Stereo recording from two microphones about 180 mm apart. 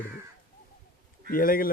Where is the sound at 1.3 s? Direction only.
50° left (ahead or behind).